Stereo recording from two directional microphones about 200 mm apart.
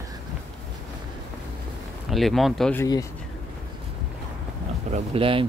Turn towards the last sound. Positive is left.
turn(degrees=-25)  # may be behind; listen again after turning